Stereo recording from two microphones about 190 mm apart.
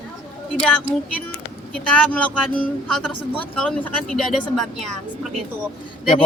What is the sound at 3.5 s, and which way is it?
Speech, 5° left (ahead or behind).